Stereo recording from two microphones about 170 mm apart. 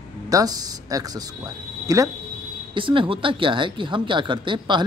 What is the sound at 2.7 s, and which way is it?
A man's voice, 30° right (ahead or behind).